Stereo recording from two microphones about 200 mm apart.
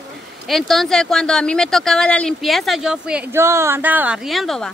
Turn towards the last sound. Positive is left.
turn(degrees=0)  # may be behind; listen again after turning